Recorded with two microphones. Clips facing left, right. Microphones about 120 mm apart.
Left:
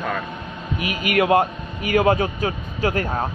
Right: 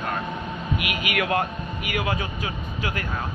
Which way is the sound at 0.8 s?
35° left (ahead or behind).